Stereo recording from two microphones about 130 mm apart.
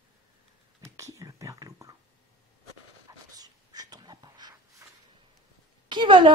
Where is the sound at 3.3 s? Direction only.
30° right (ahead or behind).